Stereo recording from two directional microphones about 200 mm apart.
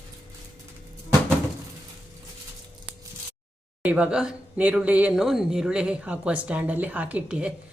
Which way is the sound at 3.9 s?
5° right (ahead or behind).